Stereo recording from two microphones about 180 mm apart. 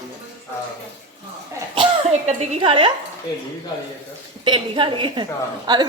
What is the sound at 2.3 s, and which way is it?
Speech, 35° right (ahead or behind).